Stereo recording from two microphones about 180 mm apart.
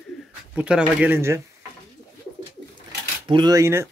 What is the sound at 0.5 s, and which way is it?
Speech, 5° right (ahead or behind).